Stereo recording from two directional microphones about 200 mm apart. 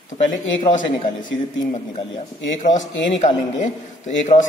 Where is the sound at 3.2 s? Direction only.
35° left (ahead or behind).